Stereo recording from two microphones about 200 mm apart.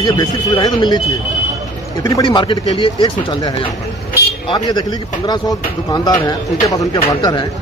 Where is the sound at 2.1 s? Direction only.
20° left (ahead or behind).